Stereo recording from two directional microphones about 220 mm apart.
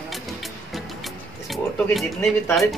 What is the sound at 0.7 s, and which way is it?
Music, centre (ahead or behind).